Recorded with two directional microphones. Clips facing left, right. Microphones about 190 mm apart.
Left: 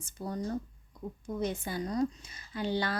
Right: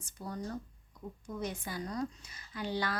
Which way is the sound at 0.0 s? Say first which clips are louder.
Left 5 dB; 25° left (ahead or behind).